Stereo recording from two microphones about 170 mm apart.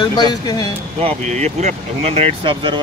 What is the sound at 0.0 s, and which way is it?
Speech, 25° left (ahead or behind).